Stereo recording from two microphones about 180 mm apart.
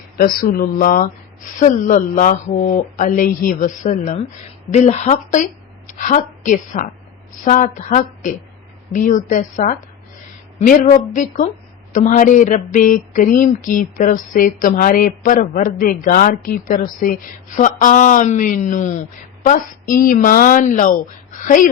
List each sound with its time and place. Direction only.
0.2 s speech: 55° left (ahead or behind)
1.5 s mantra: 45° left (ahead or behind)
4.7 s a woman's voice: 40° left (ahead or behind)
7.4 s mantra: 45° left (ahead or behind)
10.6 s speech: 40° left (ahead or behind)
11.1 s mantra: 45° left (ahead or behind)